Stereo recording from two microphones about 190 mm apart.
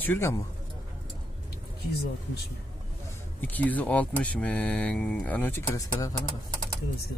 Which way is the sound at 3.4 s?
10° left (ahead or behind).